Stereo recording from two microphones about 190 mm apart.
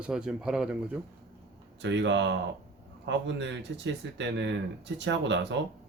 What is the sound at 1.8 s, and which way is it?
Speech, 70° right (ahead or behind).